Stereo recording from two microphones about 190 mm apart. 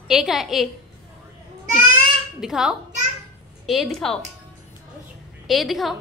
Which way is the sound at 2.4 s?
5° right (ahead or behind).